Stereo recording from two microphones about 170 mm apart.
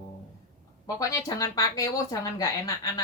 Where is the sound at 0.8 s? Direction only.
20° left (ahead or behind).